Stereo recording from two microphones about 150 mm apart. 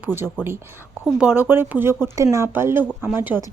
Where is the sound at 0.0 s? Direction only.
15° right (ahead or behind).